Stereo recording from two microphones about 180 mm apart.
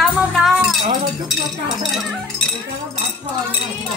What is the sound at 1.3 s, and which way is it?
Speech, centre (ahead or behind).